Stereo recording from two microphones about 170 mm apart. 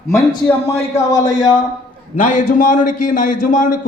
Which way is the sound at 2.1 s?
45° left (ahead or behind).